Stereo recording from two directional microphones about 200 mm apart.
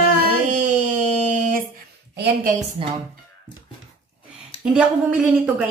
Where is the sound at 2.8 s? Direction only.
25° right (ahead or behind).